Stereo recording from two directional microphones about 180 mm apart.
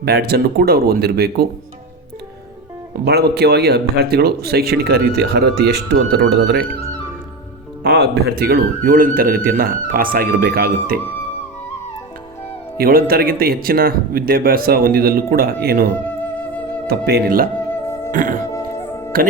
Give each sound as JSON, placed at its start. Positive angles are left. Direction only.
{"t": 0.0, "sound": "speech", "side_deg": -60}
{"t": 3.0, "sound": "speech", "side_deg": -65}
{"t": 7.9, "sound": "speech", "side_deg": -65}
{"t": 12.7, "sound": "speech", "side_deg": -55}
{"t": 18.1, "sound": "music", "side_deg": -45}
{"t": 18.5, "sound": "music", "side_deg": 15}